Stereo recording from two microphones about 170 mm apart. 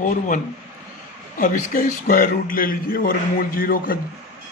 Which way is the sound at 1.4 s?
55° left (ahead or behind).